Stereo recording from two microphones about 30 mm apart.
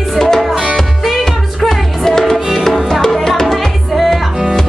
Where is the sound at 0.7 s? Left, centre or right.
Centre.